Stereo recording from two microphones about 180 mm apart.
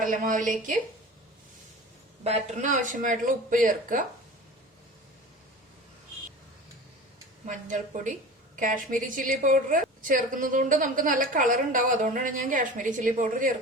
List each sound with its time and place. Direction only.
0.0 s a woman's voice: 45° right (ahead or behind)
2.2 s a woman's voice: 40° right (ahead or behind)
7.4 s a woman's voice: 45° right (ahead or behind)